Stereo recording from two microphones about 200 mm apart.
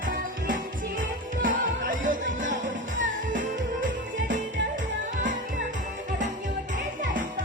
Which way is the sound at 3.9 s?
65° right (ahead or behind).